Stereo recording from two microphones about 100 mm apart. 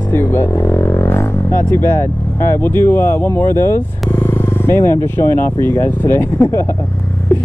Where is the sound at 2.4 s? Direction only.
25° left (ahead or behind).